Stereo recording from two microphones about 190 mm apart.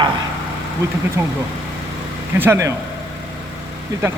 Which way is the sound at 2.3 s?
10° right (ahead or behind).